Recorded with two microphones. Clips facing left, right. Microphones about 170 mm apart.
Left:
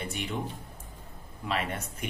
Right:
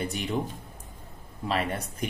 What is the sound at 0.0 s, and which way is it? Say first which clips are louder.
Speech: right 4 dB; 40° right (ahead or behind).